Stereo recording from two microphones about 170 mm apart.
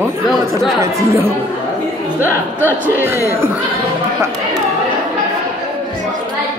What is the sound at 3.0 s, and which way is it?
Speech, 15° right (ahead or behind).